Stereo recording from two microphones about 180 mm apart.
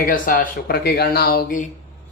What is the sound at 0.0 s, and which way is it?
Speech, 50° left (ahead or behind).